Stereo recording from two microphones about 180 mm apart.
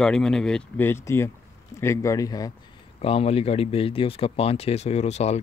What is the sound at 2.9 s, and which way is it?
Speech, 35° left (ahead or behind).